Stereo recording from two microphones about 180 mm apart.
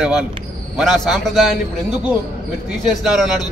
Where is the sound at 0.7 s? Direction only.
Centre (ahead or behind).